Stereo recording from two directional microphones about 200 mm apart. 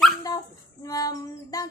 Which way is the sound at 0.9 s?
20° left (ahead or behind).